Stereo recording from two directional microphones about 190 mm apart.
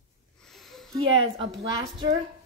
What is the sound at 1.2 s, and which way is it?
Speech, 25° right (ahead or behind).